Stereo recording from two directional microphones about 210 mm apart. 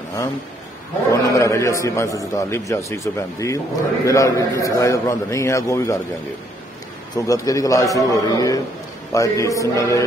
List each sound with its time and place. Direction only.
1.1 s a man's voice: 15° left (ahead or behind)
7.2 s a man's voice: 15° left (ahead or behind)